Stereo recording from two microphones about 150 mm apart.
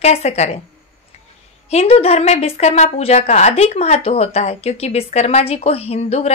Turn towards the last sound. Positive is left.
turn(degrees=45)  # may be behind; listen again after turning